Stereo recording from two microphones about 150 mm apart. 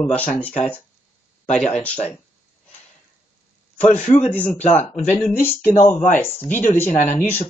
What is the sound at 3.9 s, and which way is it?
Speech, 55° left (ahead or behind).